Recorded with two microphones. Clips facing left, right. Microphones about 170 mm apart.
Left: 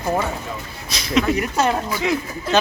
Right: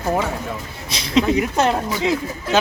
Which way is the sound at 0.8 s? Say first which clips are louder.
Right 2 dB; 25° right (ahead or behind).